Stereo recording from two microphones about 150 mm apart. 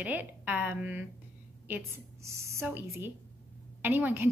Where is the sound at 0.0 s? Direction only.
10° right (ahead or behind).